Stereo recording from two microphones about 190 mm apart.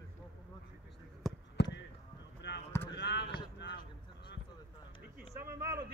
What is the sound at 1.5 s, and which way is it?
Basketball bounce, 65° left (ahead or behind).